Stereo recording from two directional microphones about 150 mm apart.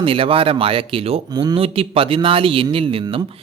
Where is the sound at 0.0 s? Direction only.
35° right (ahead or behind).